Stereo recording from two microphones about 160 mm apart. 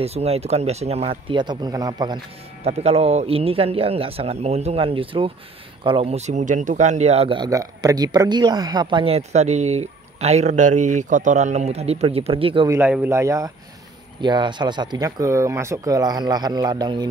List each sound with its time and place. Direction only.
0.0 s speech: 40° right (ahead or behind); by 2.1 s 25° right (ahead or behind)
2.6 s a man's voice: 40° right (ahead or behind)
12.6 s speech: 15° right (ahead or behind)
14.2 s speech: 30° right (ahead or behind)